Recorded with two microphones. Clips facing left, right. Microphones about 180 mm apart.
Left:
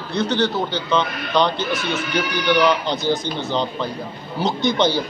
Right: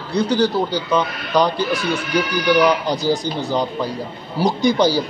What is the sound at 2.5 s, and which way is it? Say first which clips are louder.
Speech: right 2 dB; 10° right (ahead or behind).